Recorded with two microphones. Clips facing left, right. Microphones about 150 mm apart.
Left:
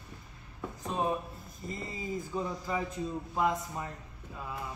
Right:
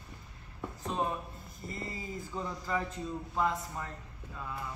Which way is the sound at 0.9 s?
15° left (ahead or behind).